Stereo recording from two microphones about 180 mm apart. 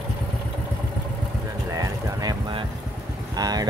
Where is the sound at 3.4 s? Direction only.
20° right (ahead or behind).